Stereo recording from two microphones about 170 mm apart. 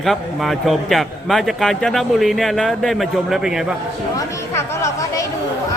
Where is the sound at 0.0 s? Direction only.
Centre (ahead or behind).